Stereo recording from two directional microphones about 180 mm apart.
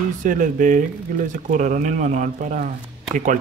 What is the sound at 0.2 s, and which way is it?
Speech, 45° right (ahead or behind).